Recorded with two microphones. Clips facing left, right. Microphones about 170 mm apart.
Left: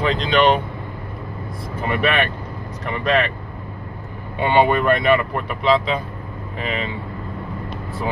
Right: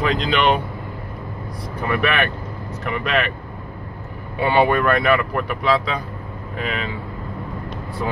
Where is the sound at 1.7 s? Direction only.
25° left (ahead or behind).